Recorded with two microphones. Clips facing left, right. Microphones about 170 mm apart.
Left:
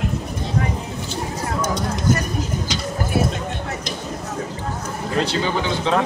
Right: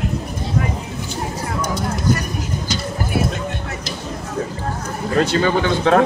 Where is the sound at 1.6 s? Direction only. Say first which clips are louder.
Right 1 dB; 10° right (ahead or behind).